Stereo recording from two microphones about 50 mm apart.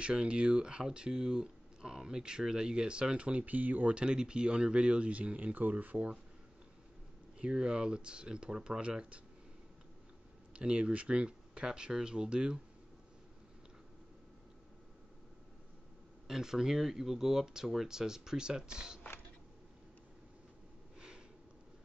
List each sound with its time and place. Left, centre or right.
0.0 s speech: centre; by 3.9 s right
3.9 s speech: centre
7.3 s speech: centre
10.5 s speech: right
16.3 s speech: centre